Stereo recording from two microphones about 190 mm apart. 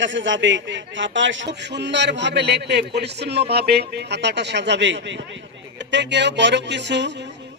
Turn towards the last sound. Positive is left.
turn(degrees=-65)  # may be behind; listen again after turning